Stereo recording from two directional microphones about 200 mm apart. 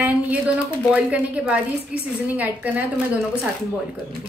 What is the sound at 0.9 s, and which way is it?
A woman's voice, 5° right (ahead or behind).